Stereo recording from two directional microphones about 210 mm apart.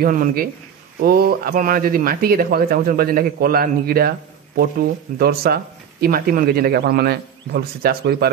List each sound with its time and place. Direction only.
0.0 s a man's voice: 40° right (ahead or behind)
5.2 s a man's voice: 45° right (ahead or behind)